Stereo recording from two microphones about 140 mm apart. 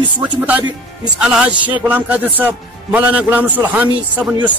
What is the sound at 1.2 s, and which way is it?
Speech, 5° right (ahead or behind).